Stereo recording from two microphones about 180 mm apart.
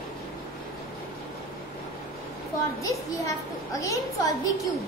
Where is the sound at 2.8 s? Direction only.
20° left (ahead or behind).